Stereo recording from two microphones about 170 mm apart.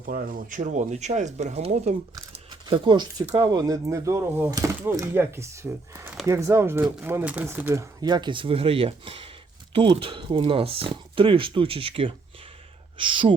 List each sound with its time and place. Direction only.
0.0 s speech: 55° right (ahead or behind)
2.3 s speech: 30° right (ahead or behind)